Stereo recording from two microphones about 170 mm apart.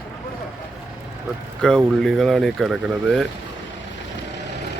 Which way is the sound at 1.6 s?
5° left (ahead or behind).